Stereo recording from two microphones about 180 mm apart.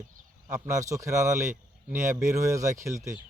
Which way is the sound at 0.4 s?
15° right (ahead or behind).